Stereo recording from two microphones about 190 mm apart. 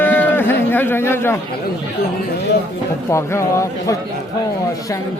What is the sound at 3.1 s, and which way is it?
Speech, 15° left (ahead or behind).